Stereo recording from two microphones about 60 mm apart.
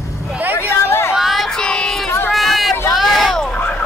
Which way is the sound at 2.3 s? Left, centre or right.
Centre.